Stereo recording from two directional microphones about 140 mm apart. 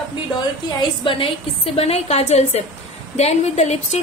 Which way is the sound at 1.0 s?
40° left (ahead or behind).